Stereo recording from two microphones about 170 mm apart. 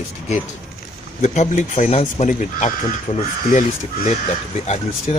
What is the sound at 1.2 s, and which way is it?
Speech, 45° left (ahead or behind).